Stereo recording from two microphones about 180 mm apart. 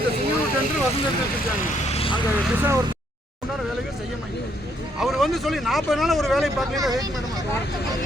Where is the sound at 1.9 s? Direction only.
30° left (ahead or behind).